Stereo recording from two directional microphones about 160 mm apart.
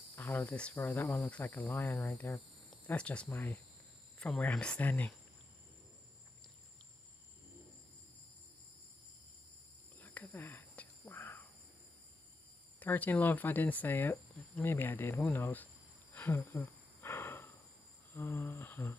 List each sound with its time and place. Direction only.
0.1 s speech: 15° left (ahead or behind)
2.7 s speech: 5° left (ahead or behind)
9.9 s whispering: 10° left (ahead or behind)
12.7 s speech: 10° left (ahead or behind)